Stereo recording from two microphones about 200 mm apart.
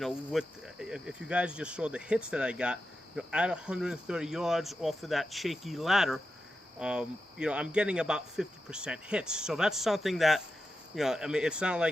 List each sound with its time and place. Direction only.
0.0 s speech: centre (ahead or behind)